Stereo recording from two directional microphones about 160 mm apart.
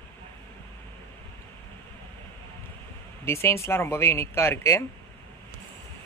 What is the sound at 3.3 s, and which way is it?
Speech, 15° left (ahead or behind).